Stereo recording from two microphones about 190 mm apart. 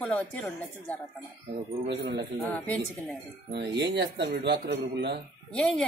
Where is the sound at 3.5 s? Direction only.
65° right (ahead or behind).